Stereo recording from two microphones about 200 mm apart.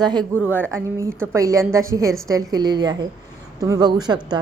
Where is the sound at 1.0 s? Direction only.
15° right (ahead or behind).